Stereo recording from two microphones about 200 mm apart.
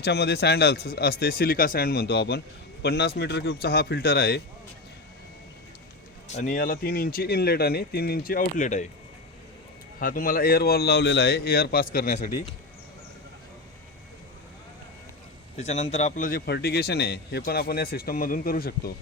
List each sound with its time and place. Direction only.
0.0 s speech: 55° left (ahead or behind)
6.2 s speech: 35° left (ahead or behind)
10.0 s speech: 45° left (ahead or behind)
15.5 s speech: 35° left (ahead or behind)